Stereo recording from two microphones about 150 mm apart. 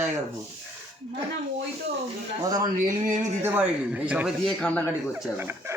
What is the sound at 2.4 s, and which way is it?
Speech, 25° right (ahead or behind).